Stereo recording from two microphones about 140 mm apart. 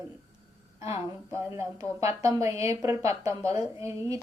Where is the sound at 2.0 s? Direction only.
20° right (ahead or behind).